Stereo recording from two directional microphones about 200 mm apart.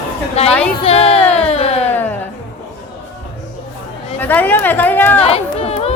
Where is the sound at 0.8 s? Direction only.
30° left (ahead or behind).